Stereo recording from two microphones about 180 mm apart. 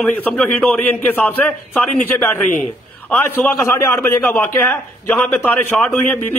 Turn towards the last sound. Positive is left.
turn(degrees=10)  # may be behind; listen again after turning